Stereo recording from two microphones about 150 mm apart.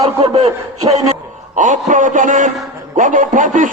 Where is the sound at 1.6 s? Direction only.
60° right (ahead or behind).